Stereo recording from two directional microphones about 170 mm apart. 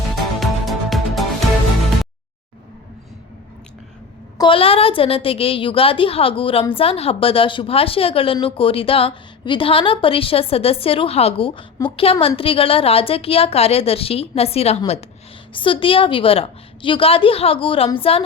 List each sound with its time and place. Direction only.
0.3 s music: centre (ahead or behind)
4.4 s a woman's voice: 30° left (ahead or behind)